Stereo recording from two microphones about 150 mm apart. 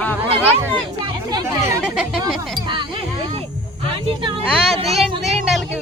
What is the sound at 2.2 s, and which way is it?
Speech, 30° right (ahead or behind).